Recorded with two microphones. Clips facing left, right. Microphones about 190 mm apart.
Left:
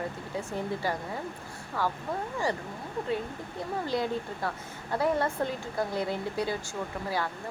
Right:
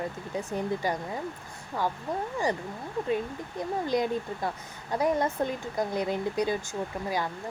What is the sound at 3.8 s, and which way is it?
A woman's voice, 15° right (ahead or behind).